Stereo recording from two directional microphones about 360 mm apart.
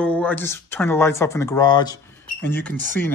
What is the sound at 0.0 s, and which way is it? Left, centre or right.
Speech, centre.